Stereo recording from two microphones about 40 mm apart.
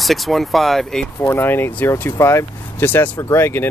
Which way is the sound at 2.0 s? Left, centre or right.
Left.